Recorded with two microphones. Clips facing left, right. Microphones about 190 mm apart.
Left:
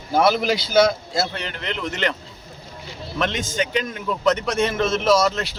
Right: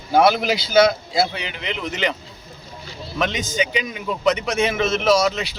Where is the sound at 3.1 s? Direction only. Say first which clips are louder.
Right 1 dB; 5° right (ahead or behind).